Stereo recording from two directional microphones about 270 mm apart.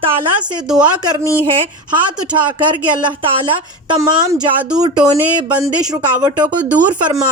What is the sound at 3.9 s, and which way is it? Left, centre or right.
Speech, centre.